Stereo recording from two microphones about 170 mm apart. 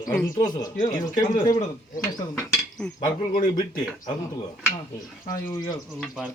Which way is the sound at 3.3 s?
55° left (ahead or behind).